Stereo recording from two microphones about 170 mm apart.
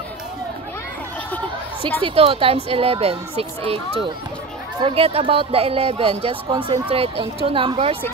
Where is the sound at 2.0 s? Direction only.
30° right (ahead or behind).